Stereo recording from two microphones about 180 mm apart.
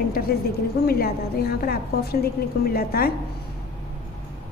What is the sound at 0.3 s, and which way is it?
A woman's voice, 55° left (ahead or behind).